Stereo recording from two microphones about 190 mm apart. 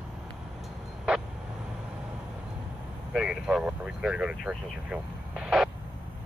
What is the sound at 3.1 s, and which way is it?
Speech, 5° right (ahead or behind).